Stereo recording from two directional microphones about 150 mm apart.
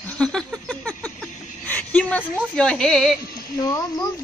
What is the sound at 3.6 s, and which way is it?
Speech, 20° left (ahead or behind).